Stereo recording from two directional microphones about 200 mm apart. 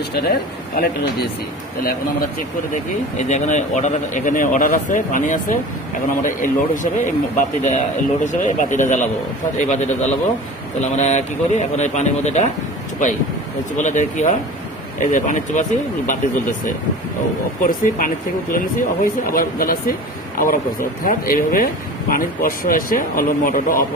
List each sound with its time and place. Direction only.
3.3 s a man's voice: 35° left (ahead or behind)
13.7 s a man's voice: 35° left (ahead or behind)